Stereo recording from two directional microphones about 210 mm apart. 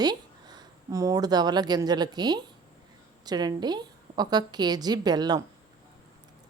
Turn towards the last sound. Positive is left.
turn(degrees=-20)  # may be behind; listen again after turning